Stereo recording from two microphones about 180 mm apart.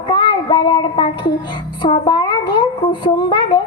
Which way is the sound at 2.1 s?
25° left (ahead or behind).